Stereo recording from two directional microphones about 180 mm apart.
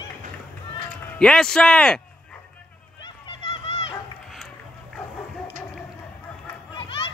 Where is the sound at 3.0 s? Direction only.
30° left (ahead or behind).